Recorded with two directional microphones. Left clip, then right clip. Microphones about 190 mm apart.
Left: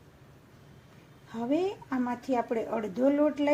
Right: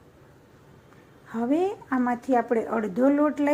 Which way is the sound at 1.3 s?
15° right (ahead or behind).